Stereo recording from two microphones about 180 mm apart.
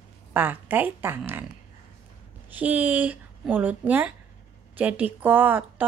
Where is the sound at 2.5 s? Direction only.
10° right (ahead or behind).